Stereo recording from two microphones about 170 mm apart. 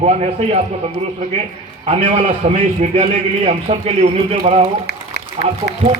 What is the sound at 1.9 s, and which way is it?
A man's voice, 35° right (ahead or behind).